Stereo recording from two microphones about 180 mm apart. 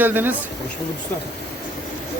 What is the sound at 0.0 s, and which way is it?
Speech, 10° right (ahead or behind).